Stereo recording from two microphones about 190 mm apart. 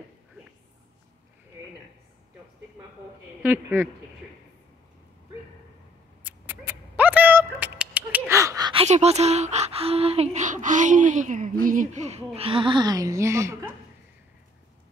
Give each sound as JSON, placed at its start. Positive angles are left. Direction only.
{"t": 3.4, "sound": "a woman's voice", "side_deg": -10}
{"t": 6.2, "sound": "a sound", "side_deg": -10}
{"t": 8.8, "sound": "a woman's voice", "side_deg": -35}